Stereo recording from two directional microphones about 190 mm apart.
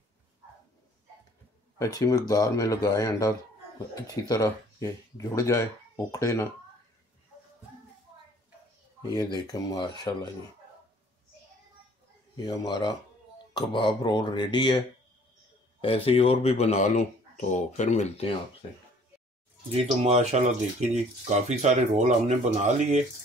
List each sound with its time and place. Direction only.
1.8 s speech: 20° left (ahead or behind)
9.0 s speech: 20° left (ahead or behind)
12.4 s speech: 20° left (ahead or behind)
15.8 s speech: 30° left (ahead or behind)
20.0 s speech: 35° right (ahead or behind)